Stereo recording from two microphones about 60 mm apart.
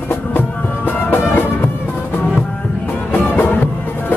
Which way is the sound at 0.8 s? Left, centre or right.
Left.